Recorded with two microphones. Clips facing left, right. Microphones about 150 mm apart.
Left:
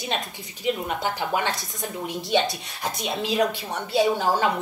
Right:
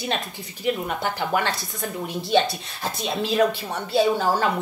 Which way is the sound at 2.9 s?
15° left (ahead or behind).